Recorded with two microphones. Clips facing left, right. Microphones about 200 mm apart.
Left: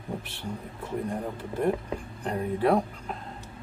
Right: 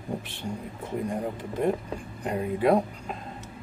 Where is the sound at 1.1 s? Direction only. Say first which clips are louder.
Right 2 dB; 15° right (ahead or behind).